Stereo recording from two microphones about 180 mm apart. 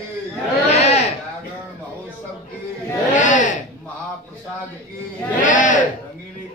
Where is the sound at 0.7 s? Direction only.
35° left (ahead or behind).